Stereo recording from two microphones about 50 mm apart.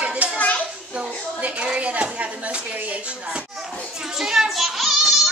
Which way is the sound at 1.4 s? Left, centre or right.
Right.